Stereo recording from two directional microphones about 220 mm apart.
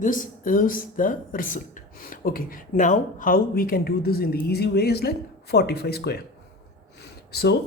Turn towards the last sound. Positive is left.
turn(degrees=45)  # may be behind; listen again after turning